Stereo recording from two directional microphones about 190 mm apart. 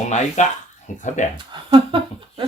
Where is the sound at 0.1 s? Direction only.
40° left (ahead or behind).